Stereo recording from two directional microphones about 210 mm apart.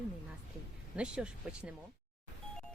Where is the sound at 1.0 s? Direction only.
5° right (ahead or behind).